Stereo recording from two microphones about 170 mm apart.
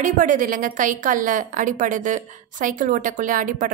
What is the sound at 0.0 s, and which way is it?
A woman's voice, 50° right (ahead or behind).